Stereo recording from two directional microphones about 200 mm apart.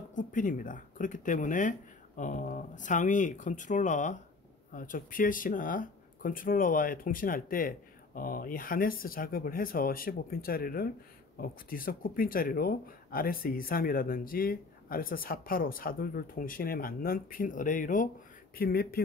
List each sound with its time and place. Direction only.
0.1 s speech: 40° left (ahead or behind)